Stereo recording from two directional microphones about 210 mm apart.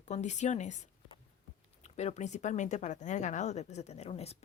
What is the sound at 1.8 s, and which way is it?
Speech, 30° left (ahead or behind).